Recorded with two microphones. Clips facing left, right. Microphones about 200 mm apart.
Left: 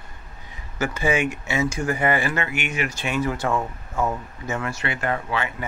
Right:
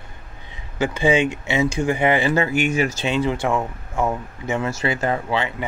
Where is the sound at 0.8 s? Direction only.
20° right (ahead or behind).